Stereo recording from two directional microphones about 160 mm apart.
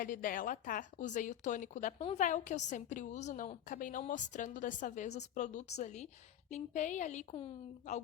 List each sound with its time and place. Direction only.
0.0 s speech: 60° left (ahead or behind); by 8.0 s 40° left (ahead or behind)